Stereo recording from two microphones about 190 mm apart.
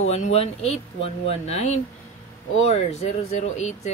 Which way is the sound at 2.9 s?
35° left (ahead or behind).